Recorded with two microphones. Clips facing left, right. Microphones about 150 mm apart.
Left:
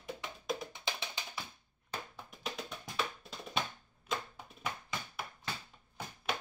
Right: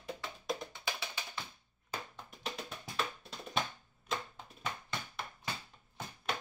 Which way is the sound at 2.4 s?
Centre (ahead or behind).